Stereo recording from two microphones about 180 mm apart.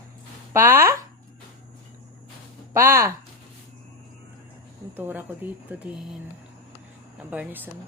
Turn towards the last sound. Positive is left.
turn(degrees=-10)  # may be behind; listen again after turning